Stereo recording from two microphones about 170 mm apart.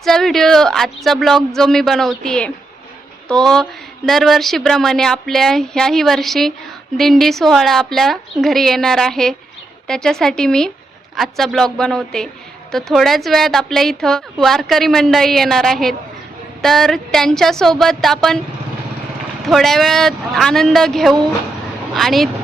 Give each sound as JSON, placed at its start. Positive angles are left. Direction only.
{"t": 0.0, "sound": "speech", "side_deg": 0}
{"t": 19.5, "sound": "speech", "side_deg": 0}